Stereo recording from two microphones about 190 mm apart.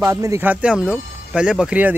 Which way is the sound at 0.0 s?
15° right (ahead or behind).